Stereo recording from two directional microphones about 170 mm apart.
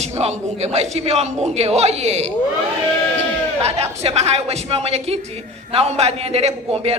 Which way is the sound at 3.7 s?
40° right (ahead or behind).